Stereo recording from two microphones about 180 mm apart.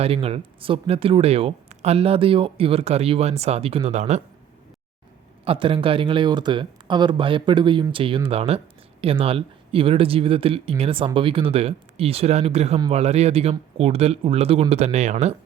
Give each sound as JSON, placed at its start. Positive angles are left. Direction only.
{"t": 0.0, "sound": "speech", "side_deg": -35}
{"t": 5.5, "sound": "speech", "side_deg": -30}